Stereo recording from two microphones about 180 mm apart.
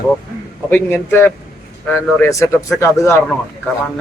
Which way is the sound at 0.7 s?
10° left (ahead or behind).